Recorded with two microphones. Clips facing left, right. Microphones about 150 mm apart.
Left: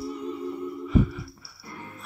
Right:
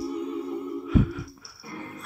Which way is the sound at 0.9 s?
Centre (ahead or behind).